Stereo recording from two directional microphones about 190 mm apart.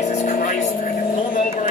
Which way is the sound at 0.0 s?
40° left (ahead or behind).